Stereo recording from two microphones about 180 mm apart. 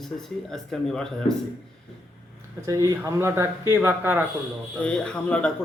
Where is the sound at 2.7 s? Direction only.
15° right (ahead or behind).